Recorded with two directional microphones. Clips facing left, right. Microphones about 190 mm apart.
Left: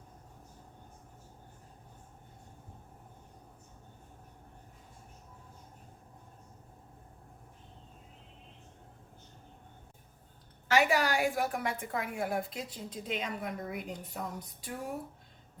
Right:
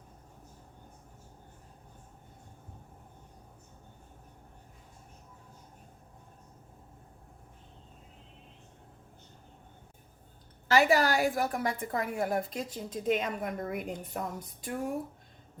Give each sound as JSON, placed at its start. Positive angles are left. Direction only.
{"t": 10.7, "sound": "a woman's voice", "side_deg": -40}